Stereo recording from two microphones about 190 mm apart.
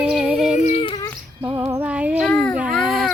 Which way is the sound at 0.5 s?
30° left (ahead or behind).